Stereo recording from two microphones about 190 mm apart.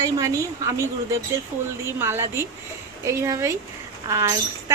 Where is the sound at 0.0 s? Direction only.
15° right (ahead or behind).